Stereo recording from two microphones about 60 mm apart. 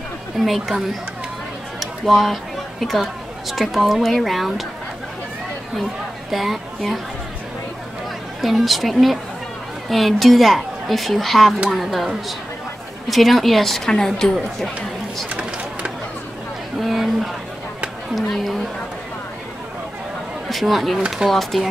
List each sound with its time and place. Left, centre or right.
0.4 s a woman's voice: centre
6.3 s a woman's voice: centre
8.4 s a woman's voice: centre
15.2 s a sound: centre
16.8 s a sound: centre
20.4 s a woman's voice: centre